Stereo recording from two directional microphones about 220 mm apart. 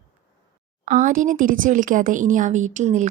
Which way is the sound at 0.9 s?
35° right (ahead or behind).